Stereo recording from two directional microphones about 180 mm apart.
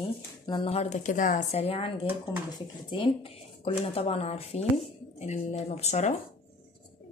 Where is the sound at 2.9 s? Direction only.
30° left (ahead or behind).